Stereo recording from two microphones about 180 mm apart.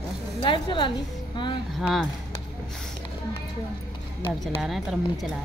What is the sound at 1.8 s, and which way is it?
Speech, centre (ahead or behind).